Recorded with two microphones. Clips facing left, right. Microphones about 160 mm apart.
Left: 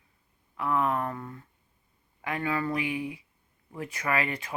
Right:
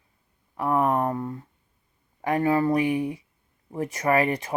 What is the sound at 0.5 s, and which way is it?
Speech, 40° right (ahead or behind).